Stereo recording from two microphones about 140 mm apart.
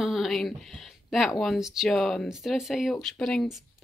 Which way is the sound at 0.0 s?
Centre (ahead or behind).